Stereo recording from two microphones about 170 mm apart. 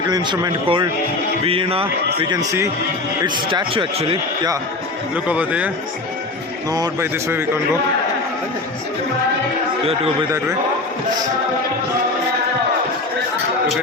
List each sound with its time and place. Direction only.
0.1 s a man's voice: 25° right (ahead or behind)
3.2 s speech: 30° right (ahead or behind)
5.1 s a man's voice: 10° right (ahead or behind)
6.7 s a man's voice: 20° right (ahead or behind)